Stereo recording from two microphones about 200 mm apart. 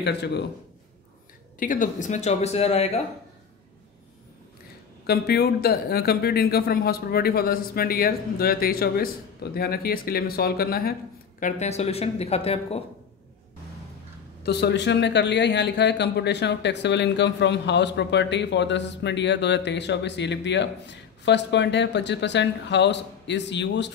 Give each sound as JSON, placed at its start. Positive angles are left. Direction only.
{"t": 0.0, "sound": "a man's voice", "side_deg": 60}
{"t": 1.6, "sound": "speech", "side_deg": 40}
{"t": 5.0, "sound": "speech", "side_deg": 55}
{"t": 14.4, "sound": "a man's voice", "side_deg": 55}